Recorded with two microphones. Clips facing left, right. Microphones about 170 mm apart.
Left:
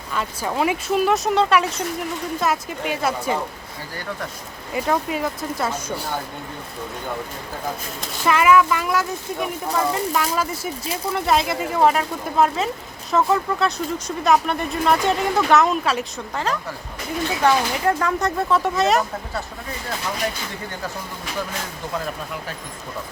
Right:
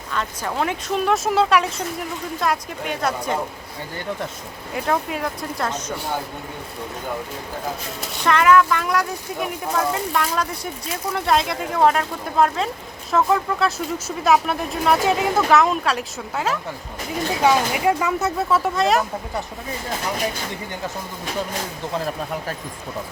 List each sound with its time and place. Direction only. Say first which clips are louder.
0.1 s speech: left 1 dB; 5° left (ahead or behind)
4.7 s speech: left 1 dB; centre (ahead or behind)
8.2 s speech: even; 5° left (ahead or behind)
21.9 s speech: right 3 dB; 35° right (ahead or behind)